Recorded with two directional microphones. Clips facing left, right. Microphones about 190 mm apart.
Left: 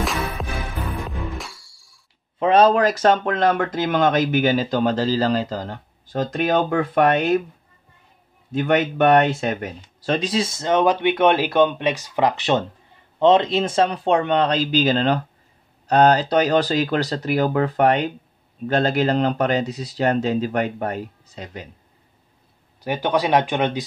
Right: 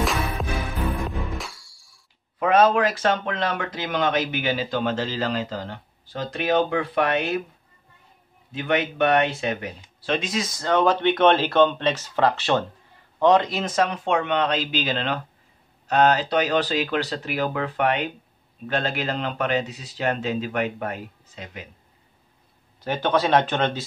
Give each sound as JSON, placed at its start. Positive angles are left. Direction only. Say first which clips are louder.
{"t": 0.0, "sound": "music", "louder": "even", "side_deg": 0}
{"t": 2.3, "sound": "speech", "louder": "left 3 dB", "side_deg": 30}
{"t": 8.5, "sound": "speech", "louder": "left 5 dB", "side_deg": 50}
{"t": 22.8, "sound": "speech", "louder": "left 1 dB", "side_deg": 15}